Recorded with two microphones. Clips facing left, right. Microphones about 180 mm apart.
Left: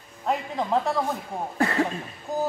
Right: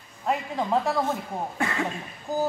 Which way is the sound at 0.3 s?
Centre (ahead or behind).